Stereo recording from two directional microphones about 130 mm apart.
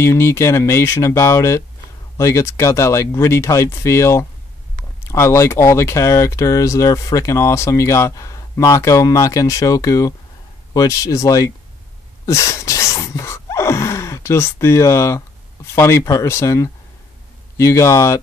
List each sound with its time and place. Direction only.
0.0 s speech: 20° left (ahead or behind)